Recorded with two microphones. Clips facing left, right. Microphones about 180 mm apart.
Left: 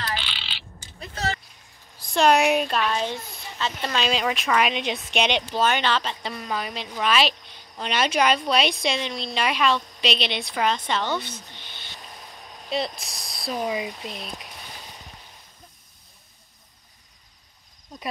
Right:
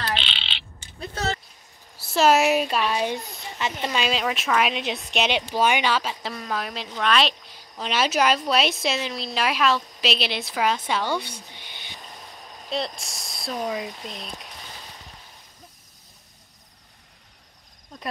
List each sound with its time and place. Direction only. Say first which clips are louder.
0.2 s a sound: right 2 dB; 25° right (ahead or behind)
2.0 s speech: even; 5° right (ahead or behind)
4.0 s speech: left 2 dB; centre (ahead or behind)
12.5 s speech: left 1 dB; centre (ahead or behind)